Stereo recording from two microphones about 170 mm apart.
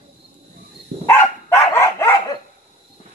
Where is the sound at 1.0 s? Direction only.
15° left (ahead or behind).